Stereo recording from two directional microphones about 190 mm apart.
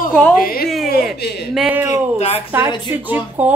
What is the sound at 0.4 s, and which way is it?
Speech, 50° left (ahead or behind).